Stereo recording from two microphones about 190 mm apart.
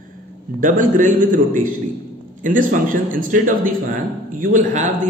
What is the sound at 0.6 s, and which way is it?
Speech, 45° right (ahead or behind).